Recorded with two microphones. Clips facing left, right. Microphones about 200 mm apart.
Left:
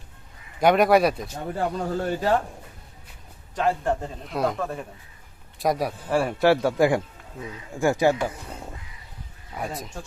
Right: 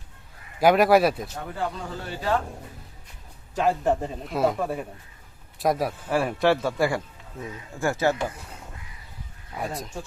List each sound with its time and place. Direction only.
0.6 s a man's voice: 5° right (ahead or behind)
1.5 s speech: 45° left (ahead or behind)
3.5 s a man's voice: centre (ahead or behind); by 8.1 s 15° left (ahead or behind)
9.6 s a man's voice: centre (ahead or behind)